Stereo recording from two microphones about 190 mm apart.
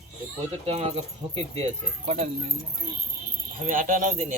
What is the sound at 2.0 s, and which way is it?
Speech, 35° right (ahead or behind).